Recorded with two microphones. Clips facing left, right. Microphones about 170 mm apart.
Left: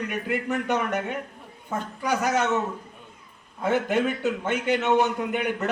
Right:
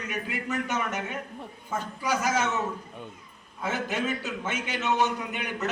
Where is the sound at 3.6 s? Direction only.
60° left (ahead or behind).